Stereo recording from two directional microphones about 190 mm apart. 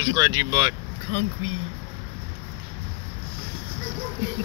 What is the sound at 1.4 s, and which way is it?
Speech, 90° right.